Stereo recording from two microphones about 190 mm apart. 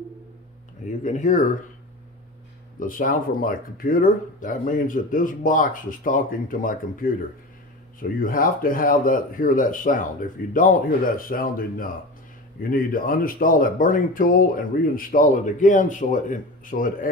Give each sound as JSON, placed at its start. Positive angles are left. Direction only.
{"t": 0.8, "sound": "speech", "side_deg": 40}
{"t": 2.8, "sound": "speech", "side_deg": 50}